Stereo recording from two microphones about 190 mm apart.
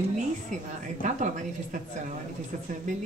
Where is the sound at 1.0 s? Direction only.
40° right (ahead or behind).